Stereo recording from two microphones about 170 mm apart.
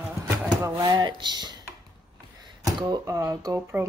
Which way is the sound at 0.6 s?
25° right (ahead or behind).